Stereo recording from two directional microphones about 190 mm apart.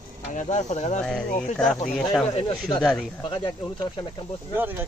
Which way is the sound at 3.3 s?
25° left (ahead or behind).